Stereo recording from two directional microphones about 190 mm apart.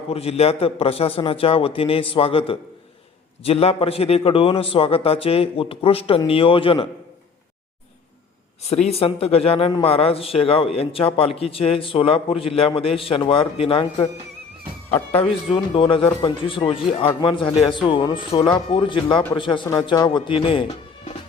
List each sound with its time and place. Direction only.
0.1 s a man's voice: 30° left (ahead or behind)
8.7 s a man's voice: 35° left (ahead or behind)
15.1 s a man's voice: 30° left (ahead or behind)